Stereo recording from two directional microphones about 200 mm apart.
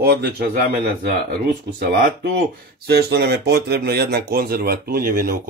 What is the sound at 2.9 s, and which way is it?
Speech, 50° right (ahead or behind).